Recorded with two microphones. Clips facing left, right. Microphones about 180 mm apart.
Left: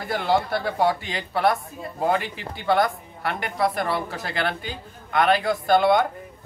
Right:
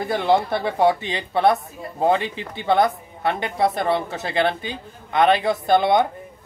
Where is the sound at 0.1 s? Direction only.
20° right (ahead or behind).